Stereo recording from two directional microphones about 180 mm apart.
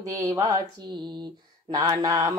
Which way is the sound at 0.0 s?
20° right (ahead or behind).